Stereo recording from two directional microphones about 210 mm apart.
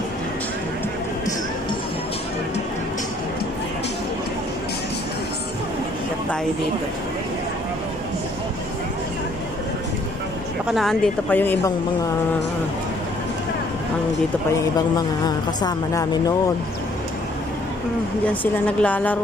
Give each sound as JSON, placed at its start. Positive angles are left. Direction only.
{"t": 10.7, "sound": "speech", "side_deg": 0}
{"t": 15.0, "sound": "speech", "side_deg": 20}
{"t": 18.2, "sound": "speech", "side_deg": 5}